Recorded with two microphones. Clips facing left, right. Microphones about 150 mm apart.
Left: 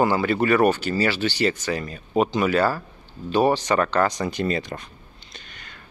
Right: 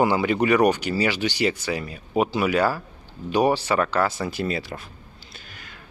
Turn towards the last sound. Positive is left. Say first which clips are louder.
# left 2 dB
turn(degrees=-5)  # may be behind; listen again after turning